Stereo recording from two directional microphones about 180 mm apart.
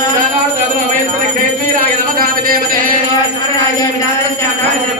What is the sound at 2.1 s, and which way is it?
Speech, 55° right (ahead or behind).